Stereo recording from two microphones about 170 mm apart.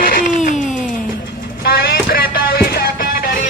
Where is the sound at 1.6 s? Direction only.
65° left (ahead or behind).